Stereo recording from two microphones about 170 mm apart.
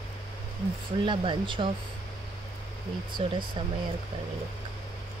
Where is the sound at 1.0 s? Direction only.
30° right (ahead or behind).